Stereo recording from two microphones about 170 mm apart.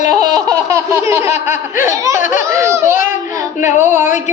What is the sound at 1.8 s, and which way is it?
A man's voice, 15° right (ahead or behind).